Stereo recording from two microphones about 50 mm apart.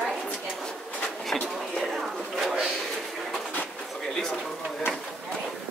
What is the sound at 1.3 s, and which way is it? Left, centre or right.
Speech, left.